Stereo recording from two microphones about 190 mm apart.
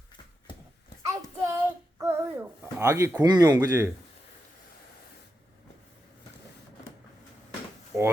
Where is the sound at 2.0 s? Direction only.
15° right (ahead or behind).